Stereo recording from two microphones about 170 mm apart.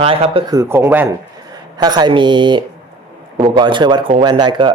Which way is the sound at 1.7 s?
25° right (ahead or behind).